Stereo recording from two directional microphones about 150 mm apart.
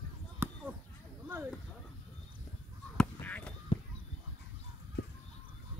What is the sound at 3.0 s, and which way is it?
Honk, 10° left (ahead or behind).